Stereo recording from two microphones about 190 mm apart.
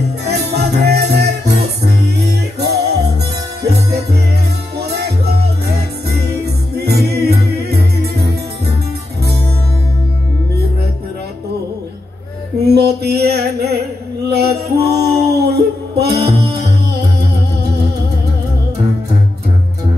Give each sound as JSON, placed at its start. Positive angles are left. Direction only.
{"t": 0.2, "sound": "music", "side_deg": -60}
{"t": 12.6, "sound": "music", "side_deg": -60}
{"t": 16.2, "sound": "music", "side_deg": -30}